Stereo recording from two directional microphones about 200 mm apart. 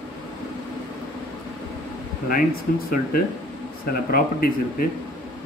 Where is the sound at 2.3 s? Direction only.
45° left (ahead or behind).